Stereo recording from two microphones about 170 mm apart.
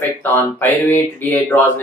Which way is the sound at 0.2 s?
10° left (ahead or behind).